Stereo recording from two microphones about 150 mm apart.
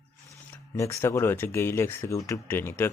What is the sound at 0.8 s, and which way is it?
Speech, 20° left (ahead or behind).